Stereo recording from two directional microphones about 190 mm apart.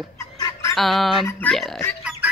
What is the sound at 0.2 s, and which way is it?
Chicken, 15° left (ahead or behind).